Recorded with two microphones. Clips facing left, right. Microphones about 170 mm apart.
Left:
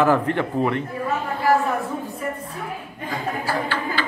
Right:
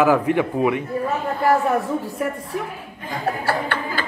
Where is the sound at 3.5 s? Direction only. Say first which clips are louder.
Right 1 dB; 60° right (ahead or behind).